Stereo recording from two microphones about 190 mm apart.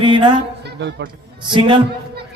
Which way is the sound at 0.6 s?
65° right (ahead or behind).